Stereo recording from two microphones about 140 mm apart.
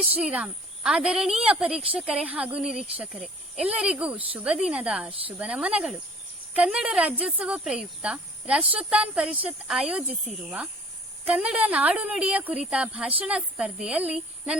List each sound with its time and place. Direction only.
0.2 s speech: 10° right (ahead or behind)